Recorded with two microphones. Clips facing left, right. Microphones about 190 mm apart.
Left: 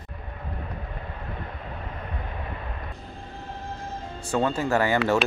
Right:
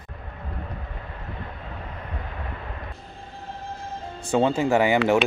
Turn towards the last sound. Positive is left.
turn(degrees=-15)  # may be behind; listen again after turning